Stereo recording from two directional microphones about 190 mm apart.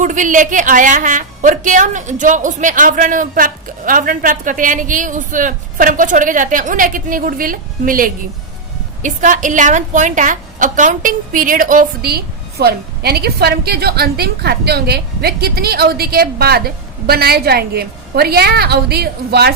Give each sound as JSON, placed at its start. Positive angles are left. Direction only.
{"t": 0.0, "sound": "a woman's voice", "side_deg": -40}